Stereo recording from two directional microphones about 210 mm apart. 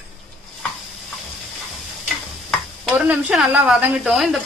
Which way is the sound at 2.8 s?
5° right (ahead or behind).